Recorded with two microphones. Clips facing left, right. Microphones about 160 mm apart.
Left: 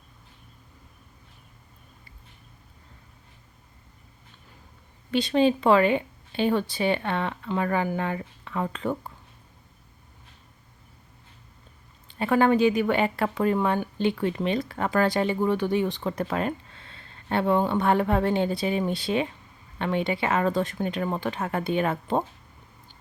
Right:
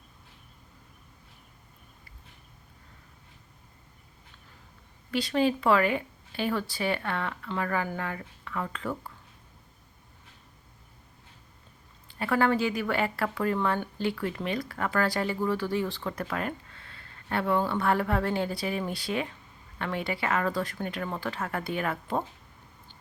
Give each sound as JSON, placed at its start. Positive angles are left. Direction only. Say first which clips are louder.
{"t": 5.1, "sound": "speech", "louder": "left 4 dB", "side_deg": 20}
{"t": 12.0, "sound": "speech", "louder": "left 4 dB", "side_deg": 20}